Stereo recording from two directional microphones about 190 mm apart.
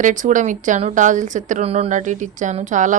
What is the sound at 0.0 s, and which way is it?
A woman's voice, 40° right (ahead or behind).